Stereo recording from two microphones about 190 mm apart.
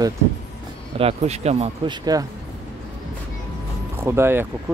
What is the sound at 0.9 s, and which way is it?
Speech, 35° right (ahead or behind).